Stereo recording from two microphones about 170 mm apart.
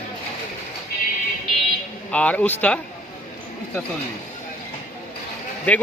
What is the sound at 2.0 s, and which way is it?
Speech, 10° left (ahead or behind).